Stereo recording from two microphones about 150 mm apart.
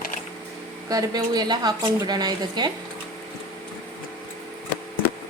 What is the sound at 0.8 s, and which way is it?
A woman's voice, 25° right (ahead or behind).